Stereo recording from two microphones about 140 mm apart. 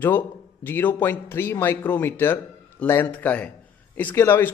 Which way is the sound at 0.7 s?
15° left (ahead or behind).